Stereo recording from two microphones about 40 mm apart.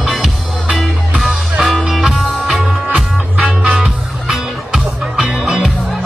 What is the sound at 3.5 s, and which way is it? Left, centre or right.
Music, right.